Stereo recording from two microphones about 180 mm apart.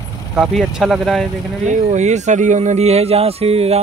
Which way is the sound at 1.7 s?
40° right (ahead or behind).